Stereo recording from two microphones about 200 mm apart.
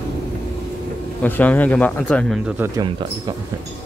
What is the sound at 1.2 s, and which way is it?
Speech, 10° left (ahead or behind).